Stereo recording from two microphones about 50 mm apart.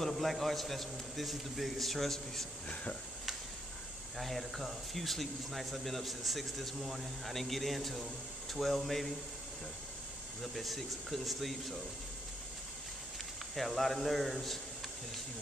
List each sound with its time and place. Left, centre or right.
0.0 s speech: centre
2.7 s speech: left
4.2 s speech: centre
10.4 s speech: centre
13.6 s speech: centre